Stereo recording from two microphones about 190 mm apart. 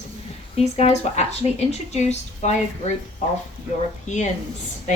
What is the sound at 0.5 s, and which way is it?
Speech, 35° left (ahead or behind).